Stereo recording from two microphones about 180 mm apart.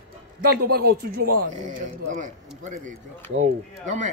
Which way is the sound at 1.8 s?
45° right (ahead or behind).